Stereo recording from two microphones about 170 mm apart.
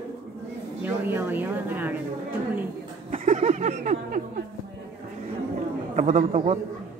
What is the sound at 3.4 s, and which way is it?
A man's voice, 45° right (ahead or behind).